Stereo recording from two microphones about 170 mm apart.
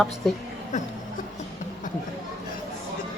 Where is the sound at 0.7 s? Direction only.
45° left (ahead or behind).